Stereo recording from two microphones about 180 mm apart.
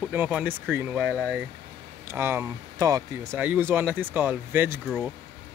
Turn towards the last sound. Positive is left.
turn(degrees=5)  # may be behind; listen again after turning